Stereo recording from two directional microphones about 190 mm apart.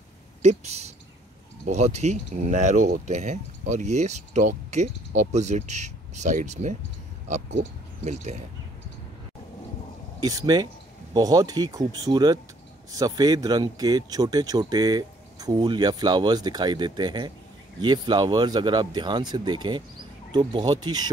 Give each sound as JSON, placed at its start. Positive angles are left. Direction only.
{"t": 0.4, "sound": "speech", "side_deg": -35}
{"t": 8.0, "sound": "speech", "side_deg": -35}
{"t": 10.2, "sound": "speech", "side_deg": -20}